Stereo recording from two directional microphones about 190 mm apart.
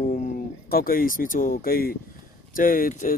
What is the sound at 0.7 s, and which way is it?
Speech, 50° left (ahead or behind).